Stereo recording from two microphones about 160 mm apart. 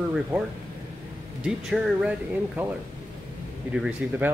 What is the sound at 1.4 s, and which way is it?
Speech, 5° right (ahead or behind).